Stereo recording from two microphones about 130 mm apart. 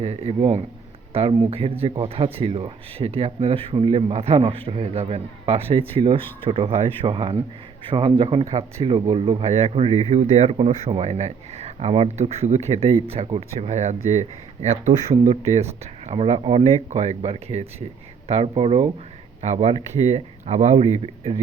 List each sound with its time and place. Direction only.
0.0 s speech: 50° right (ahead or behind)
19.4 s speech: 55° right (ahead or behind)